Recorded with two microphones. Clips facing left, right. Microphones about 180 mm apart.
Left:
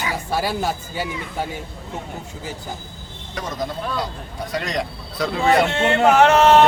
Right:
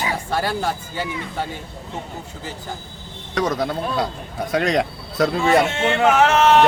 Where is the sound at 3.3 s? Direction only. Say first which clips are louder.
Right 6 dB; 70° right (ahead or behind); by 5.3 s 55° right (ahead or behind).